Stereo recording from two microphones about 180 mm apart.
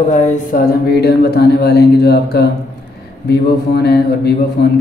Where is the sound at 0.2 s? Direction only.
50° left (ahead or behind).